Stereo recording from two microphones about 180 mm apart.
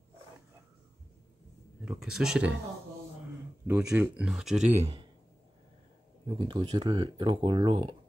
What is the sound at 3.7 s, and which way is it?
Speech, 10° right (ahead or behind).